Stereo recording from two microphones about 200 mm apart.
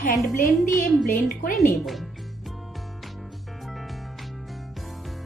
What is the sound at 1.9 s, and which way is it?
Music, centre (ahead or behind).